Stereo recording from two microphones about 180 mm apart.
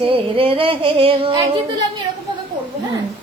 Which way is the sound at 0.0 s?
30° right (ahead or behind).